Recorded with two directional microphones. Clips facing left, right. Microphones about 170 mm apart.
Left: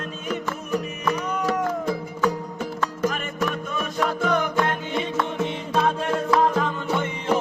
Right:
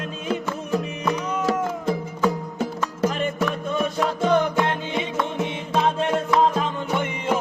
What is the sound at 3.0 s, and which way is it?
Music, 30° right (ahead or behind).